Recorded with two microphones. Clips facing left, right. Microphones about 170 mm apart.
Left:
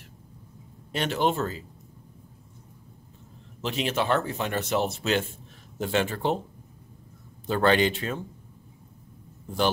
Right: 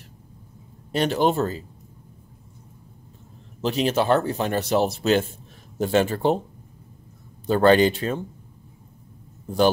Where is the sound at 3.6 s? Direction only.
40° right (ahead or behind).